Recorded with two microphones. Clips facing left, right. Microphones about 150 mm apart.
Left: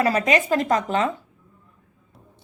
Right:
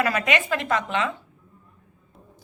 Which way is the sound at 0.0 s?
35° left (ahead or behind).